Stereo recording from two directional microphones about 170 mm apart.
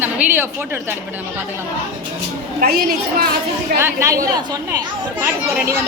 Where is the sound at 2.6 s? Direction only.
65° right (ahead or behind).